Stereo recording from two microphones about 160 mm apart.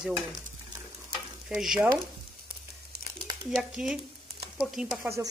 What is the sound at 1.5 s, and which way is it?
Speech, 5° right (ahead or behind).